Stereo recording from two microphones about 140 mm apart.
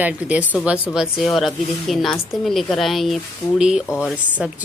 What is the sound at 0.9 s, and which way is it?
A woman's voice, centre (ahead or behind).